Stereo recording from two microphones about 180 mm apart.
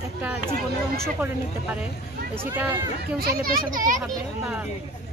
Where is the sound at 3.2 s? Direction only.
55° right (ahead or behind).